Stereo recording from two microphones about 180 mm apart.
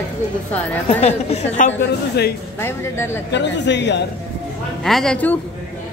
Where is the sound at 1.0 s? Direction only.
35° left (ahead or behind).